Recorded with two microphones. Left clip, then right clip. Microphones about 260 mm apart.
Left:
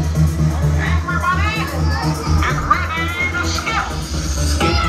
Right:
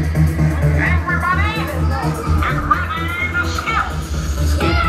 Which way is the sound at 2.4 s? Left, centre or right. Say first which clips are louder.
Left 1 dB; left.